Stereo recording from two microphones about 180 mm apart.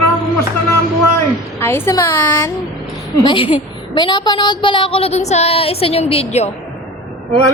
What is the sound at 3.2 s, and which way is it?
A woman's voice, 30° left (ahead or behind).